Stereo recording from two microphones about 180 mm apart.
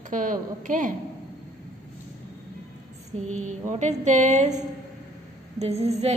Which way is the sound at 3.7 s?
40° right (ahead or behind).